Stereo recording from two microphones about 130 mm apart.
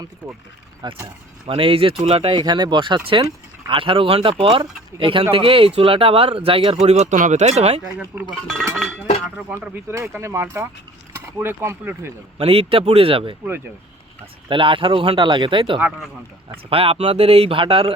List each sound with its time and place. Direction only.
1.0 s speech: 45° right (ahead or behind)
6.8 s speech: 60° right (ahead or behind)
8.1 s speech: 15° right (ahead or behind)
9.4 s speech: 10° right (ahead or behind)
9.9 s speech: 20° right (ahead or behind)
12.4 s speech: 45° right (ahead or behind)
14.5 s speech: 40° right (ahead or behind)